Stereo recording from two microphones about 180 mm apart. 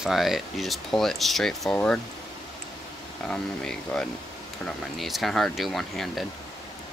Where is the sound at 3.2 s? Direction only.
5° left (ahead or behind).